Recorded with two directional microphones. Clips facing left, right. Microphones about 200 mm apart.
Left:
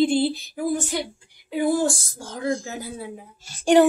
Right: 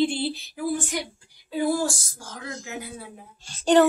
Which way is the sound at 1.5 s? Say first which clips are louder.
Left 3 dB; 20° left (ahead or behind).